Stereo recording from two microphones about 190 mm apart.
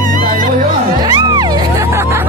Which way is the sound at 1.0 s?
20° right (ahead or behind).